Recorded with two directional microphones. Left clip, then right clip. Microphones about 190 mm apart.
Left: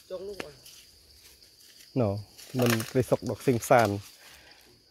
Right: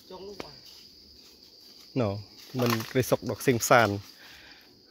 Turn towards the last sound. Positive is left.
turn(degrees=0)  # may be behind; listen again after turning